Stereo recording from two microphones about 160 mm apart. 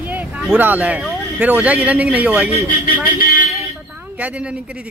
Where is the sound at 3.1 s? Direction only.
65° left (ahead or behind).